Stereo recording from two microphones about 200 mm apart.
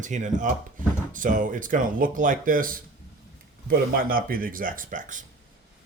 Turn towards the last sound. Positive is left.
turn(degrees=-40)  # may be behind; listen again after turning